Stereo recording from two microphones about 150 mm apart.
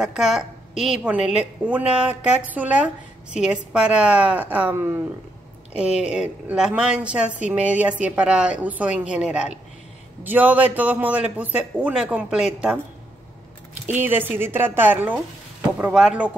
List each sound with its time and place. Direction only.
0.0 s a woman's voice: 5° right (ahead or behind)
13.8 s a woman's voice: 15° right (ahead or behind)